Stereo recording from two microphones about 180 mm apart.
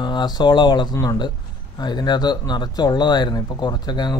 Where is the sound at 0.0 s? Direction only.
25° left (ahead or behind).